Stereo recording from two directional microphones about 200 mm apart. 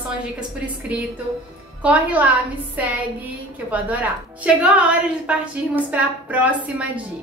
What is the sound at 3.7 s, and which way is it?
A woman's voice, 10° right (ahead or behind).